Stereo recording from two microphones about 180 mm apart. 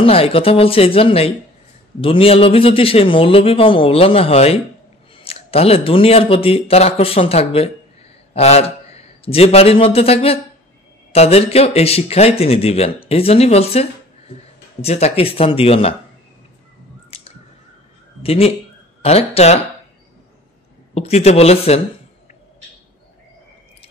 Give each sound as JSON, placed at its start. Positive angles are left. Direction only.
{"t": 0.0, "sound": "a man's voice", "side_deg": 30}
{"t": 17.1, "sound": "a sound", "side_deg": 35}
{"t": 18.2, "sound": "speech", "side_deg": 35}
{"t": 20.9, "sound": "speech", "side_deg": 35}